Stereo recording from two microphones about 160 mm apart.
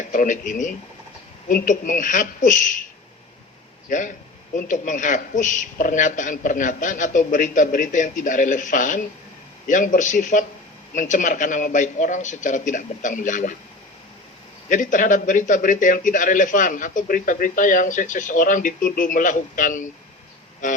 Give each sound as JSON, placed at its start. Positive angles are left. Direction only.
{"t": 0.1, "sound": "a man's voice", "side_deg": 55}
{"t": 3.8, "sound": "a man's voice", "side_deg": 50}
{"t": 14.7, "sound": "a man's voice", "side_deg": 55}